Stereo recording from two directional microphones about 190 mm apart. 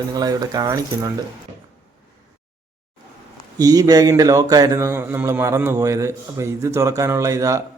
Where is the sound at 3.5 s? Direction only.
20° right (ahead or behind).